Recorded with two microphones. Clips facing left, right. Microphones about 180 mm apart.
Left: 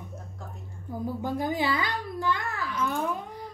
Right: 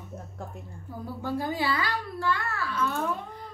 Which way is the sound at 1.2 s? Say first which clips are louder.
Even; 15° left (ahead or behind).